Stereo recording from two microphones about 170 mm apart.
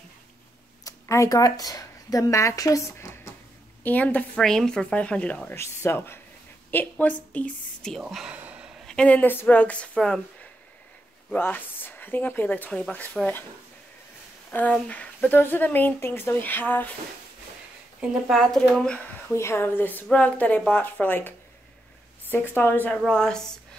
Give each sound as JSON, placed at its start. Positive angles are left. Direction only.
{"t": 0.8, "sound": "speech", "side_deg": 20}
{"t": 8.8, "sound": "speech", "side_deg": 5}
{"t": 14.5, "sound": "speech", "side_deg": 10}
{"t": 18.0, "sound": "speech", "side_deg": 0}
{"t": 19.3, "sound": "speech", "side_deg": 15}
{"t": 22.3, "sound": "speech", "side_deg": 10}